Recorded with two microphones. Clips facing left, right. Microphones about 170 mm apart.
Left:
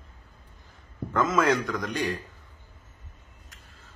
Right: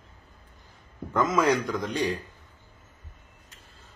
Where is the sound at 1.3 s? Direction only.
20° right (ahead or behind).